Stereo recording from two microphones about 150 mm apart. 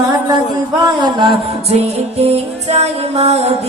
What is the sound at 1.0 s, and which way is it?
Music, 30° right (ahead or behind).